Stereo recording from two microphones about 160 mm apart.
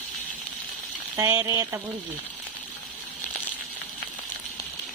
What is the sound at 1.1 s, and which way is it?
Speech, 20° right (ahead or behind).